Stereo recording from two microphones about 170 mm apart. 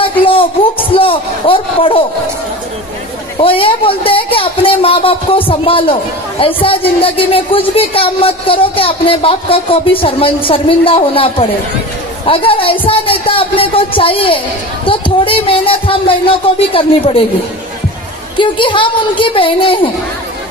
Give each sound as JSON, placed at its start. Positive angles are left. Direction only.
{"t": 0.2, "sound": "a sound", "side_deg": 30}
{"t": 3.3, "sound": "speech", "side_deg": 30}
{"t": 18.4, "sound": "a woman's voice", "side_deg": 30}